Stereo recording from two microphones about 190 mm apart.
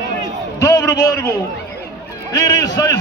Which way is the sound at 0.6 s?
15° left (ahead or behind).